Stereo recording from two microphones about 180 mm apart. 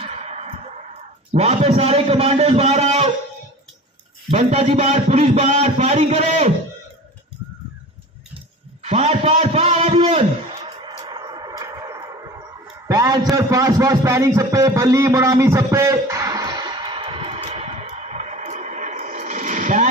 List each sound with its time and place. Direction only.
0.0 s music: 35° right (ahead or behind)
1.3 s a man's voice: 35° right (ahead or behind)
4.3 s a man's voice: 35° right (ahead or behind)
8.8 s a man's voice: 35° right (ahead or behind)
11.1 s a sound: 25° right (ahead or behind); by 19.9 s 45° right (ahead or behind)